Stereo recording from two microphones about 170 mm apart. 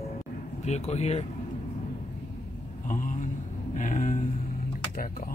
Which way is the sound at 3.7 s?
50° left (ahead or behind).